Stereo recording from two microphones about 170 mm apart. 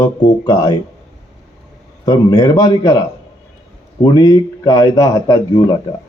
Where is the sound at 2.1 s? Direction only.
20° left (ahead or behind).